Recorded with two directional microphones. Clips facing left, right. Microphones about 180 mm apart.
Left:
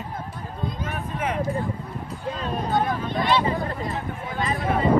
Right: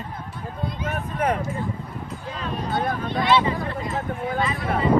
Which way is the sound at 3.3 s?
40° left (ahead or behind).